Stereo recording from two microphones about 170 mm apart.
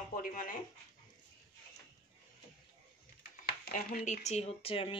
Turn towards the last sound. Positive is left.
turn(degrees=35)  # may be behind; listen again after turning